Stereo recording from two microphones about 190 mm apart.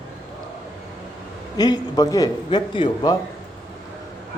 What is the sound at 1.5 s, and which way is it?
Speech, 20° left (ahead or behind).